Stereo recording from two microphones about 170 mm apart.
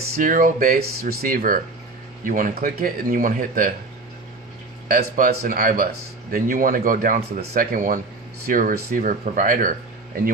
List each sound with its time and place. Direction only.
0.1 s speech: 50° right (ahead or behind)
4.8 s speech: 55° right (ahead or behind)